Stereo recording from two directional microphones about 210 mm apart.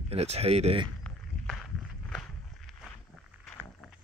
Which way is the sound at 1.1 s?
5° left (ahead or behind).